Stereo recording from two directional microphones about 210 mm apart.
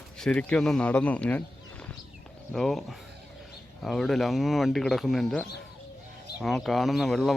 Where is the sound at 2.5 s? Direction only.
Centre (ahead or behind).